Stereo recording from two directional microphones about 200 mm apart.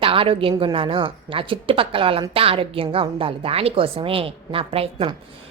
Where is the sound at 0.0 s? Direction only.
25° right (ahead or behind).